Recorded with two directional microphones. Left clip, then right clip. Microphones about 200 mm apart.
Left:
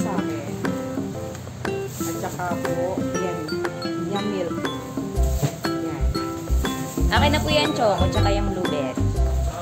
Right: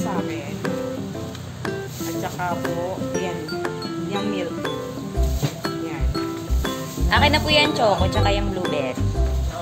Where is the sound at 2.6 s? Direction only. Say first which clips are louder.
Left 1 dB; centre (ahead or behind).